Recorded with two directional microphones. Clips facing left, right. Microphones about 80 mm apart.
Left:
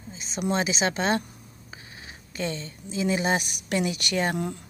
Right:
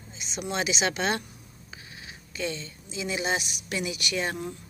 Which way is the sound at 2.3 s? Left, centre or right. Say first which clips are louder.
Left 2 dB; left.